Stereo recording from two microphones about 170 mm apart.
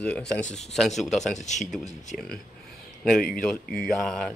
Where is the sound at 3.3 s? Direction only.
5° left (ahead or behind).